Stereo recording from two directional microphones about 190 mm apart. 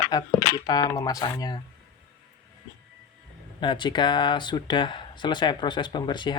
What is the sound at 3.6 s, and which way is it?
Speech, 25° left (ahead or behind).